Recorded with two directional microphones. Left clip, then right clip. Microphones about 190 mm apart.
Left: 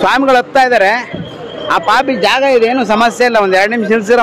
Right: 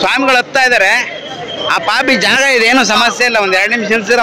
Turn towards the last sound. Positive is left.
turn(degrees=25)  # may be behind; listen again after turning